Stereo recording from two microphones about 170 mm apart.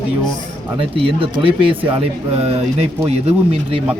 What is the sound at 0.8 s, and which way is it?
Speech, 30° right (ahead or behind).